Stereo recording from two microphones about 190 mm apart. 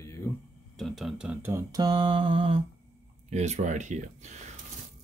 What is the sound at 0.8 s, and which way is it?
Mantra, centre (ahead or behind).